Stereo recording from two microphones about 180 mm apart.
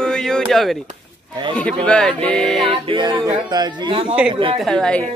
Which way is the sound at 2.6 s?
30° right (ahead or behind).